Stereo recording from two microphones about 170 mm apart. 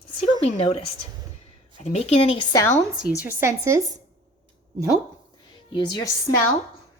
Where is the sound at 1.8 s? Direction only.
40° left (ahead or behind).